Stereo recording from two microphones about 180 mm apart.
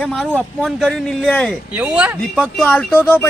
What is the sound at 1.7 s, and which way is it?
Speech, 5° right (ahead or behind).